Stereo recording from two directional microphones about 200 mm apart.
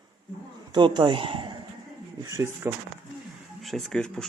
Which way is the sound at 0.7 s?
25° right (ahead or behind).